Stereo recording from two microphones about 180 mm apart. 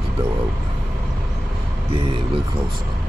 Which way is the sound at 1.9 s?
30° right (ahead or behind).